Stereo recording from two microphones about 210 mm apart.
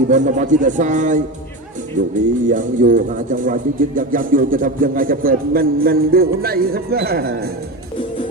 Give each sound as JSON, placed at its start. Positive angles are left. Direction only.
{"t": 0.1, "sound": "speech", "side_deg": -35}